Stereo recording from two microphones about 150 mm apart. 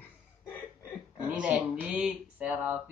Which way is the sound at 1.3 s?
10° right (ahead or behind).